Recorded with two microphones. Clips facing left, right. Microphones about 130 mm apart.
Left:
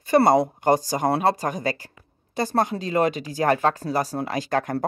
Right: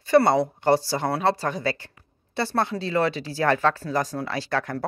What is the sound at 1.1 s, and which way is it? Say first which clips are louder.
Speech: even; 15° left (ahead or behind).